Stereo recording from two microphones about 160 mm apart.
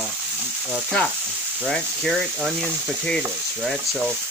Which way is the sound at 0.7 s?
5° left (ahead or behind).